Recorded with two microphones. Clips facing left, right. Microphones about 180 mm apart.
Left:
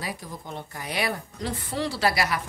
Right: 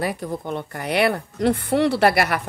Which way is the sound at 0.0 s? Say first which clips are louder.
Right 10 dB; 65° right (ahead or behind).